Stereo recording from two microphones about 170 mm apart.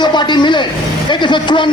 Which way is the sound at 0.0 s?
25° left (ahead or behind).